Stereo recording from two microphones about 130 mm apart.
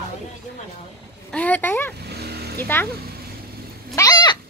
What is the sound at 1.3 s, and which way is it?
Speech, 10° left (ahead or behind).